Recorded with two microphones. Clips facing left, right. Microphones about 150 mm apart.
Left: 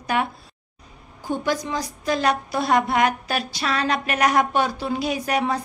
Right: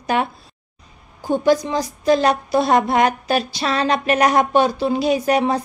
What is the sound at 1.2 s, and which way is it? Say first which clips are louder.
A woman's voice: right 8 dB; 30° right (ahead or behind).